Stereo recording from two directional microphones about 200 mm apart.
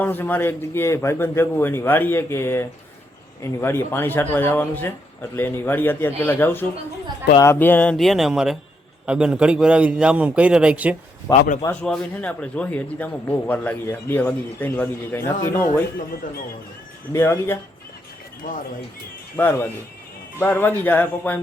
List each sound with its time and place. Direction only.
0.0 s a man's voice: 10° left (ahead or behind); by 10.9 s 5° right (ahead or behind)
11.3 s a man's voice: 40° left (ahead or behind)
11.6 s a man's voice: 5° left (ahead or behind)
17.1 s a man's voice: 15° left (ahead or behind)
19.4 s a man's voice: 10° left (ahead or behind)